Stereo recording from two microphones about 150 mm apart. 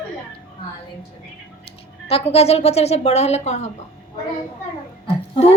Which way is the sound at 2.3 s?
45° left (ahead or behind).